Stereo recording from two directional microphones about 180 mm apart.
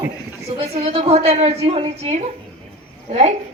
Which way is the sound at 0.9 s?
35° right (ahead or behind).